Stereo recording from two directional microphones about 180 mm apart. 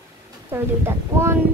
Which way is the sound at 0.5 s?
15° right (ahead or behind).